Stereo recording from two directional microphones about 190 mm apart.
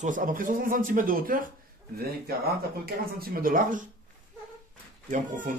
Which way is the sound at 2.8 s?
50° right (ahead or behind).